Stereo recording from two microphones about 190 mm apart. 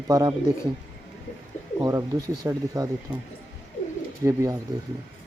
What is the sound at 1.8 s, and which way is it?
Speech, 15° right (ahead or behind).